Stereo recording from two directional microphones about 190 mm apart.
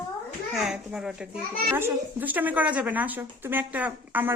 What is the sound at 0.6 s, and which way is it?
Speech, 5° right (ahead or behind).